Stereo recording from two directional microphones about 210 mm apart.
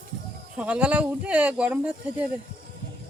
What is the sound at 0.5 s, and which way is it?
Speech, 5° right (ahead or behind).